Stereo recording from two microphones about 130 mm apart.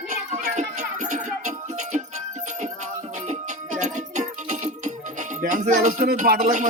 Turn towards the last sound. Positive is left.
turn(degrees=-85)